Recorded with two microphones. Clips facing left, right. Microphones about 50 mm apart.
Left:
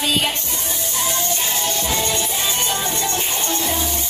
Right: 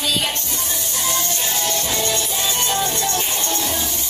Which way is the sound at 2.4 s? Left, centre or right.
Left.